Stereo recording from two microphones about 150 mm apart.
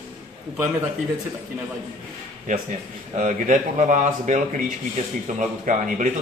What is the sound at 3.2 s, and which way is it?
A man's voice, 55° right (ahead or behind).